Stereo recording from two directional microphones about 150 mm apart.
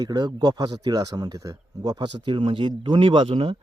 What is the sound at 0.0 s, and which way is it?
Speech, 25° right (ahead or behind).